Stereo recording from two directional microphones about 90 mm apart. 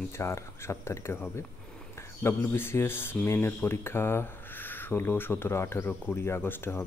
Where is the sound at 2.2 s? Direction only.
25° left (ahead or behind).